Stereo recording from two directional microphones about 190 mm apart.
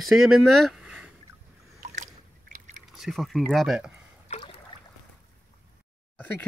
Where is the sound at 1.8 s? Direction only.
40° right (ahead or behind).